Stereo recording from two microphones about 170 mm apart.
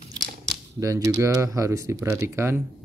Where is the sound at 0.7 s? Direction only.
20° right (ahead or behind).